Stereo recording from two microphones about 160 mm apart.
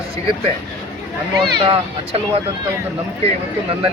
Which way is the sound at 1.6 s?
35° right (ahead or behind).